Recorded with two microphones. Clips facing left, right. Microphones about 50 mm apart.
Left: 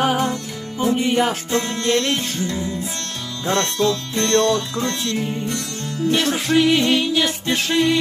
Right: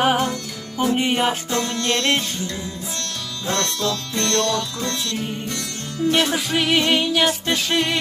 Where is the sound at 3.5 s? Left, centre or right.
Left.